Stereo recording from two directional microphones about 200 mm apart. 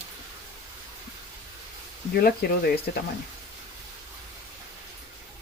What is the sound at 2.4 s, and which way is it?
Speech, 55° left (ahead or behind).